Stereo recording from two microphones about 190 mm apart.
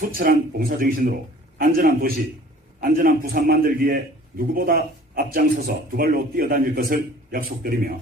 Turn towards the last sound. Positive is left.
turn(degrees=-50)  # may be behind; listen again after turning